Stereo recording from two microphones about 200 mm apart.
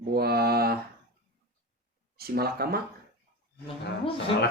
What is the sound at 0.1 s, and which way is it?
Mantra, 50° right (ahead or behind).